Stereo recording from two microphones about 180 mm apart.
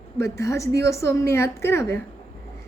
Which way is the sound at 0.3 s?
15° left (ahead or behind).